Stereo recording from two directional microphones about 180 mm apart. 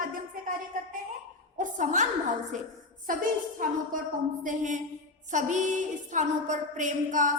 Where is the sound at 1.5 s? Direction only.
45° right (ahead or behind).